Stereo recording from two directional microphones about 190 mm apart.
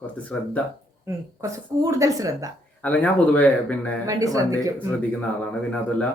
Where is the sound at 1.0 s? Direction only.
15° right (ahead or behind).